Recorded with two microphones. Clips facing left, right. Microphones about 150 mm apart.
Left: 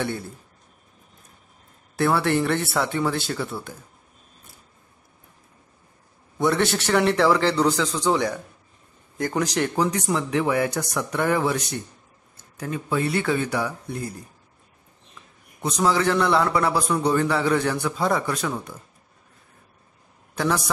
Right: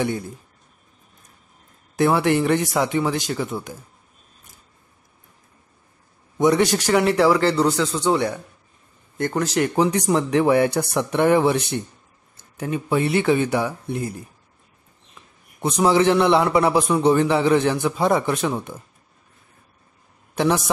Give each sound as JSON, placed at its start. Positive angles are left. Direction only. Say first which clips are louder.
{"t": 2.0, "sound": "a man's voice", "louder": "right 3 dB", "side_deg": -15}
{"t": 6.3, "sound": "a man's voice", "louder": "right 4 dB", "side_deg": -15}
{"t": 9.8, "sound": "a man's voice", "louder": "right 6 dB", "side_deg": -30}
{"t": 15.6, "sound": "a man's voice", "louder": "right 4 dB", "side_deg": -25}
{"t": 20.3, "sound": "a man's voice", "louder": "right 4 dB", "side_deg": -25}